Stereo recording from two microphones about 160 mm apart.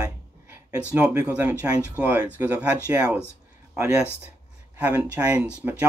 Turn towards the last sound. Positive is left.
turn(degrees=-10)  # may be behind; listen again after turning